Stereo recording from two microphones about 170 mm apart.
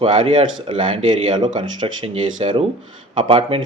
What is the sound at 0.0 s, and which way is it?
Speech, 30° right (ahead or behind).